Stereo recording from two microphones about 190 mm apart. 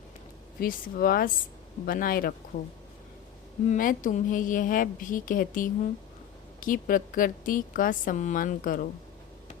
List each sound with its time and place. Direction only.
0.6 s a woman's voice: 50° left (ahead or behind)
3.7 s a woman's voice: 45° left (ahead or behind)